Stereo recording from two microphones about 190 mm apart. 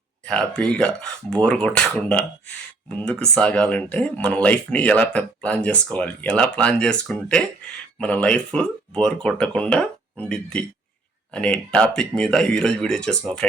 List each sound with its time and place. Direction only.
0.3 s speech: 5° left (ahead or behind)